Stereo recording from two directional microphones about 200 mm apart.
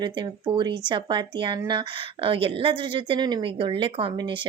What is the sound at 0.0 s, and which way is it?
A woman's voice, 25° right (ahead or behind).